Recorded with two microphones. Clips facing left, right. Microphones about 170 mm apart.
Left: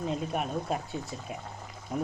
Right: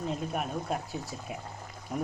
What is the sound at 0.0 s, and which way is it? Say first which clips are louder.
Dishes: left 1 dB; centre (ahead or behind).